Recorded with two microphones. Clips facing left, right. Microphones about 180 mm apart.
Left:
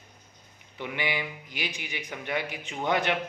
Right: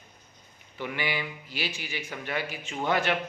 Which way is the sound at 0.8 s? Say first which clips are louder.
Even; 20° left (ahead or behind).